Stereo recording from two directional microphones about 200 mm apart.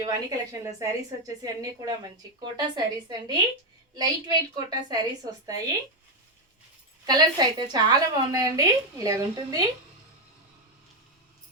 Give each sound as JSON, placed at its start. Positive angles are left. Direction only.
{"t": 0.0, "sound": "a woman's voice", "side_deg": -20}
{"t": 7.0, "sound": "a woman's voice", "side_deg": -20}